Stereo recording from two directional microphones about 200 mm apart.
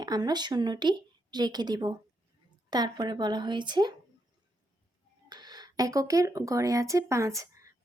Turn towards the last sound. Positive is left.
turn(degrees=-15)  # may be behind; listen again after turning